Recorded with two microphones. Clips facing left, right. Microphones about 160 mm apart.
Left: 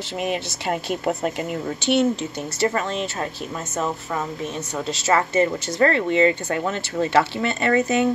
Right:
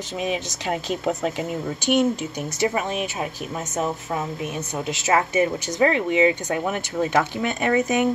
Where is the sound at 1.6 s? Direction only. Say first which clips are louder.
Left 1 dB; 10° right (ahead or behind).